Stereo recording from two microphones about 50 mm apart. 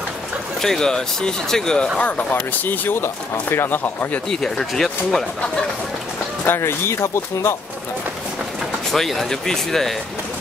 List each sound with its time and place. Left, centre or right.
0.6 s speech: centre
2.0 s speech: left
4.3 s speech: centre
6.6 s speech: left
8.9 s speech: centre